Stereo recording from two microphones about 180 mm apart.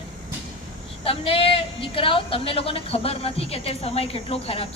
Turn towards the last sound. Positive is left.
turn(degrees=30)  # may be behind; listen again after turning